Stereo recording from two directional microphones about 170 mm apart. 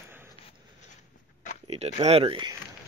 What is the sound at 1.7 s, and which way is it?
Speech, 40° right (ahead or behind).